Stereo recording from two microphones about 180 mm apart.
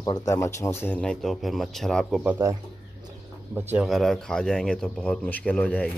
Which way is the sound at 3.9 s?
Centre (ahead or behind).